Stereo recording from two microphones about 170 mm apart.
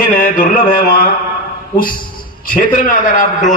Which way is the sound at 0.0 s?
55° left (ahead or behind).